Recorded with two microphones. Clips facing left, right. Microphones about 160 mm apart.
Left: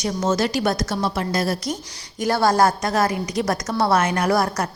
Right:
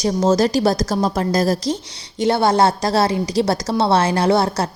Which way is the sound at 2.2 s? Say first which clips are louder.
Right 2 dB; 25° right (ahead or behind).